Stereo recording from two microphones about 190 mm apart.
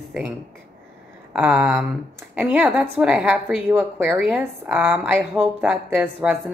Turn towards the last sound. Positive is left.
turn(degrees=-10)  # may be behind; listen again after turning